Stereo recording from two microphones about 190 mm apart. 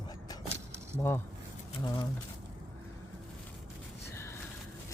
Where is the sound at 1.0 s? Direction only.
10° left (ahead or behind).